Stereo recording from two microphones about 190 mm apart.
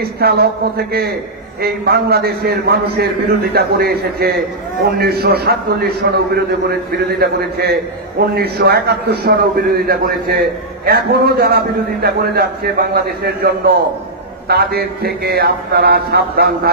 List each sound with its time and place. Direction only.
0.0 s a man's voice: 55° right (ahead or behind)
1.6 s a man's voice: 55° right (ahead or behind)